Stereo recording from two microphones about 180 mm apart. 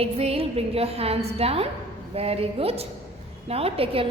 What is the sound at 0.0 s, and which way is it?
A woman's voice, 35° right (ahead or behind).